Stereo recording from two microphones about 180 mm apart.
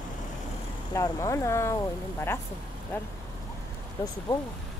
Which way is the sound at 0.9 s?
15° left (ahead or behind).